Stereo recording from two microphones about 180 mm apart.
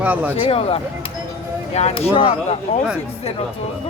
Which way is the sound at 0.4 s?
35° left (ahead or behind).